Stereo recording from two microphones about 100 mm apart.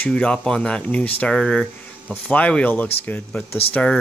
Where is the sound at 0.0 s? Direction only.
10° left (ahead or behind).